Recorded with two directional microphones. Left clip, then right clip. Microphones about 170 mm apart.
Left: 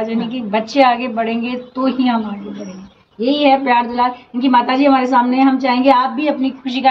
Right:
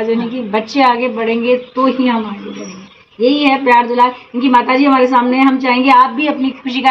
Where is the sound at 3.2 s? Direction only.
40° left (ahead or behind).